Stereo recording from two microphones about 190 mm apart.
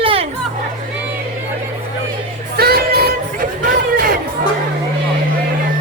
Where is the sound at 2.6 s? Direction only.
55° right (ahead or behind).